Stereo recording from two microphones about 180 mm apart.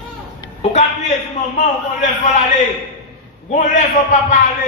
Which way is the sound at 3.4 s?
45° left (ahead or behind).